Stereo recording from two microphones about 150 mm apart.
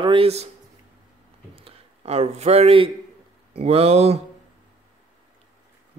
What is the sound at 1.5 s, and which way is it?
A man's voice, 40° right (ahead or behind).